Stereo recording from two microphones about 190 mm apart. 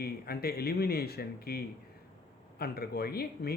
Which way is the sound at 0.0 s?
55° left (ahead or behind).